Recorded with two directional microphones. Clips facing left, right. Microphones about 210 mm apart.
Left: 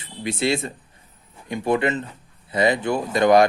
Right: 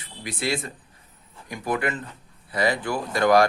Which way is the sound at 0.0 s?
25° left (ahead or behind).